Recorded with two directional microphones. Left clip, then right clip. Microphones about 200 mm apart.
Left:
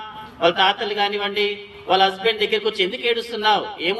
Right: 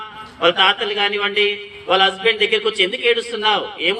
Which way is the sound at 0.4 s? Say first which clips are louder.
Right 3 dB; 40° left (ahead or behind).